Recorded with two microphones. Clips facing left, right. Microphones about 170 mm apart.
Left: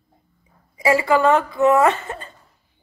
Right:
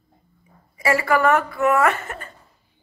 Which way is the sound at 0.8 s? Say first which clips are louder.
Left 2 dB; 20° left (ahead or behind).